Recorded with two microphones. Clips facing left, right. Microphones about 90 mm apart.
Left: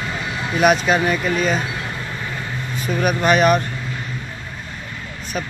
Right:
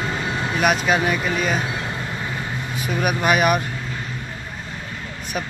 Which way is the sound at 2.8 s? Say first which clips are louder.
Left 2 dB; 10° right (ahead or behind).